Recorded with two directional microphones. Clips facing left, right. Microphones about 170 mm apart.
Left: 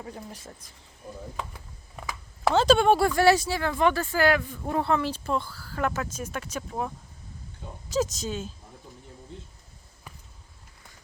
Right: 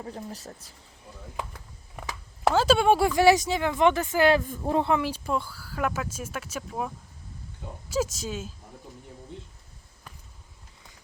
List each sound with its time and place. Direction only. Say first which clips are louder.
0.0 s speech: right 2 dB; 35° right (ahead or behind)
2.5 s speech: left 1 dB; 5° right (ahead or behind)